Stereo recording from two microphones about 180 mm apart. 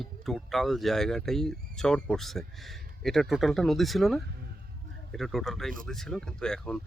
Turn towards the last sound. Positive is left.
turn(degrees=5)  # may be behind; listen again after turning